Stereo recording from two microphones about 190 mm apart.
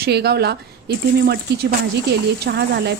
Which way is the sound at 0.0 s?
60° right (ahead or behind).